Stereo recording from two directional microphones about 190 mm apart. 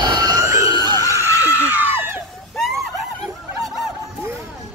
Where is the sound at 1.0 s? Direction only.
15° right (ahead or behind).